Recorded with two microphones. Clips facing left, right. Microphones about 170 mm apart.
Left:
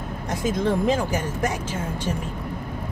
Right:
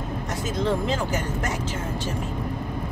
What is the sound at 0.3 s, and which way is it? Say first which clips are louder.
Vehicle: left 7 dB; 10° left (ahead or behind).